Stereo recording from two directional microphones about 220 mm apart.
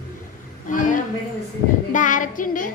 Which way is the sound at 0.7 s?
35° left (ahead or behind).